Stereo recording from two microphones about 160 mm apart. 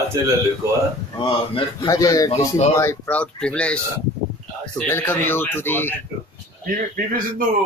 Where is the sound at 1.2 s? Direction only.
25° left (ahead or behind).